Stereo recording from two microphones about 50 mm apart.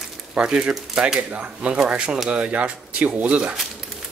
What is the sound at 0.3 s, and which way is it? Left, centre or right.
Speech, centre.